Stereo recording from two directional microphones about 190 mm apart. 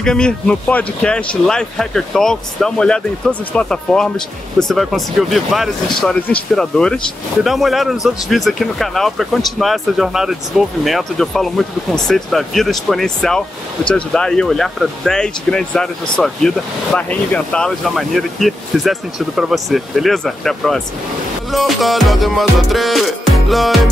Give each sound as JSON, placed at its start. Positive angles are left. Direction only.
{"t": 0.0, "sound": "speech", "side_deg": 5}